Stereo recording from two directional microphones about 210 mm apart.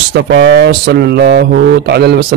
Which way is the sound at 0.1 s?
50° right (ahead or behind).